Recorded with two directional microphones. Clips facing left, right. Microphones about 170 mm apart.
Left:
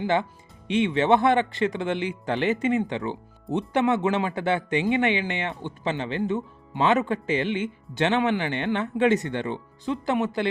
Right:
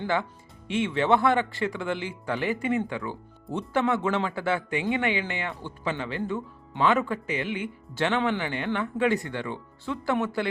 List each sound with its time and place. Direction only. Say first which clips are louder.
0.0 s speech: left 3 dB; 20° left (ahead or behind)